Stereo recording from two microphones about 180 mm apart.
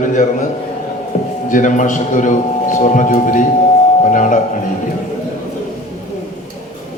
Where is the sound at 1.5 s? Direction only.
45° left (ahead or behind).